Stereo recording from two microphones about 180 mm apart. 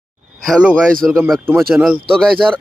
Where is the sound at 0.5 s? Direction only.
5° right (ahead or behind).